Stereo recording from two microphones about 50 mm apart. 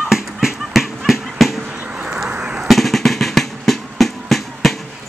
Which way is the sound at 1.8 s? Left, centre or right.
Right.